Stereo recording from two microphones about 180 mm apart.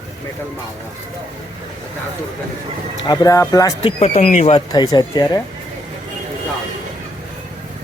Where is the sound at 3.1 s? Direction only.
20° left (ahead or behind).